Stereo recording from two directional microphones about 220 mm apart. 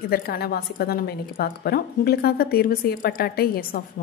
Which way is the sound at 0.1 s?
45° left (ahead or behind).